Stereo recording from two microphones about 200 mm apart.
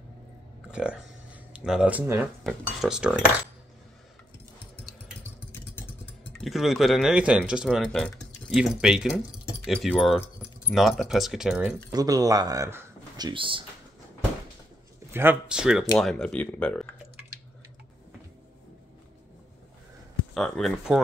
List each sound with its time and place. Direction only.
0.7 s speech: 5° right (ahead or behind)
6.4 s speech: centre (ahead or behind)
11.9 s speech: 20° right (ahead or behind)
13.3 s speech: 25° right (ahead or behind)
15.1 s speech: 5° right (ahead or behind)
20.3 s speech: centre (ahead or behind)